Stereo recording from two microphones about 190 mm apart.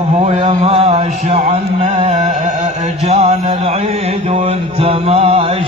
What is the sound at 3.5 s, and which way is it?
Mantra, 30° right (ahead or behind).